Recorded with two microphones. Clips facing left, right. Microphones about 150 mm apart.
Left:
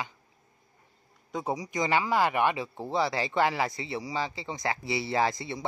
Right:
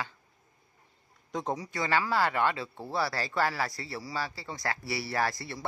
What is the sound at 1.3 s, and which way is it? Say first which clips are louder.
Speech: left 2 dB; 10° left (ahead or behind).